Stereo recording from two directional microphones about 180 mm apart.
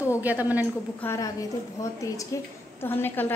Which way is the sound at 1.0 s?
15° left (ahead or behind).